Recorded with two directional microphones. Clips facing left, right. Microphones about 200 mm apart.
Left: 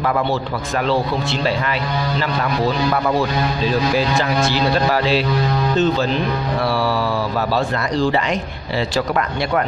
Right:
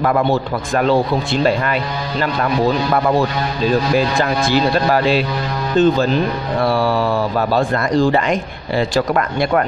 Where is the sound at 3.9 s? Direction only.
50° right (ahead or behind).